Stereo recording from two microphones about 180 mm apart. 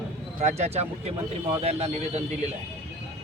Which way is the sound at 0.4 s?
40° right (ahead or behind).